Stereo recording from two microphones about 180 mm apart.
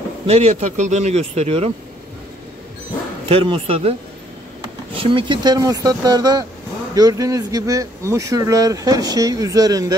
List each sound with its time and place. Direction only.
0.3 s speech: 35° right (ahead or behind)
3.3 s speech: 30° right (ahead or behind)
4.9 s speech: 25° right (ahead or behind)